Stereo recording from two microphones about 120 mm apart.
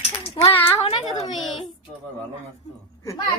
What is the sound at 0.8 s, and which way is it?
Speech, 55° left (ahead or behind).